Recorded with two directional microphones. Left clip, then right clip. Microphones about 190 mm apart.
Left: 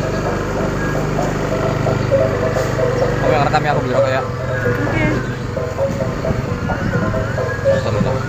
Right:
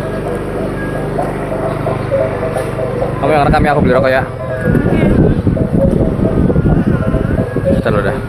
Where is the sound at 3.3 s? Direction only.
60° right (ahead or behind).